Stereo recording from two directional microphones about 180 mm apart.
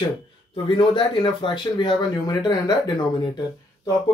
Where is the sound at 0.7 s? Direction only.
25° left (ahead or behind).